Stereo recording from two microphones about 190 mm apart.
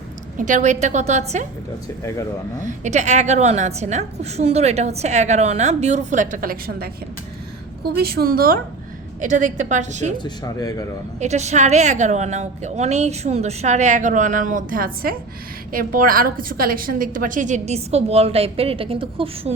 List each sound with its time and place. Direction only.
0.3 s a woman's voice: 40° right (ahead or behind)
2.0 s speech: 15° left (ahead or behind)
2.6 s a woman's voice: 40° right (ahead or behind)
7.9 s a woman's voice: 55° right (ahead or behind)
10.2 s speech: 20° left (ahead or behind)
11.2 s a woman's voice: 35° right (ahead or behind)